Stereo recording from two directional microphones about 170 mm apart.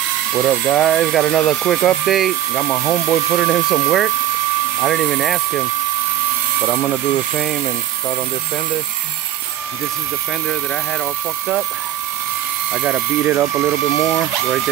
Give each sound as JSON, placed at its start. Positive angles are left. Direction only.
{"t": 0.3, "sound": "speech", "side_deg": 5}
{"t": 2.6, "sound": "speech", "side_deg": 10}
{"t": 6.6, "sound": "speech", "side_deg": 10}
{"t": 12.7, "sound": "speech", "side_deg": -5}